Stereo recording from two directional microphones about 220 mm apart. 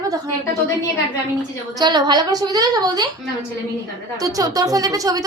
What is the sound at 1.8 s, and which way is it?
A woman's voice, 20° right (ahead or behind).